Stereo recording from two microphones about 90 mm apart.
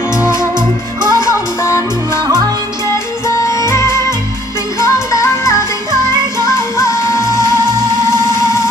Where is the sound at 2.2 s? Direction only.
45° right (ahead or behind).